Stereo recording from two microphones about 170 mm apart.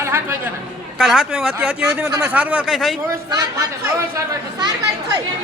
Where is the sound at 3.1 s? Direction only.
20° right (ahead or behind).